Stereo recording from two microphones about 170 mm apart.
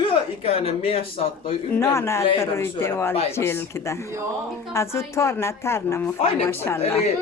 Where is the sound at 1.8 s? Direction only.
15° left (ahead or behind).